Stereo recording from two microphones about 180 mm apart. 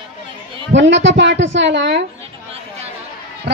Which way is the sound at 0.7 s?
90° right.